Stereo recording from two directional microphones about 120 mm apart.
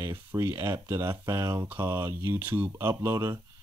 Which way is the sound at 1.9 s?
20° right (ahead or behind).